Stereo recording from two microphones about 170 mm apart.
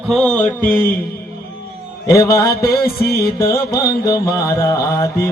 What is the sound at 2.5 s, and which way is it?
Music, 65° left (ahead or behind).